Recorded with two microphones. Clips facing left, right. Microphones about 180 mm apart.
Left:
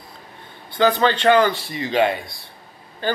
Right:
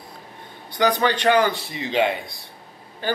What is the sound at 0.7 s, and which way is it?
Speech, 15° right (ahead or behind).